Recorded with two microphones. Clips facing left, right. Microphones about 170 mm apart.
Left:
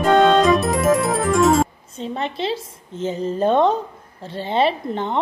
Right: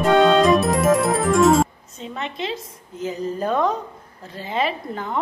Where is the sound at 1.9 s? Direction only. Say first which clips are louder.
Left 5 dB; 30° left (ahead or behind).